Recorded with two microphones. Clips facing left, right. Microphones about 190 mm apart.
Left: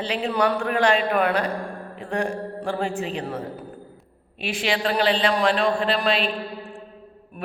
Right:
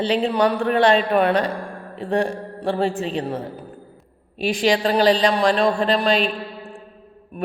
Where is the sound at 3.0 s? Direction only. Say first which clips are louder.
Right 3 dB; 30° right (ahead or behind).